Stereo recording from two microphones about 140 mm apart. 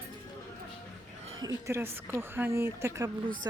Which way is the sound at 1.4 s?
20° right (ahead or behind).